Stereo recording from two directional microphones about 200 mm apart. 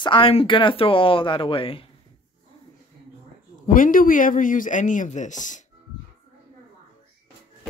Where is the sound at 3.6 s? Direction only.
45° left (ahead or behind).